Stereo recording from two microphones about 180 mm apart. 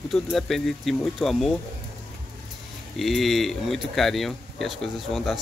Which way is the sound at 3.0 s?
Centre (ahead or behind).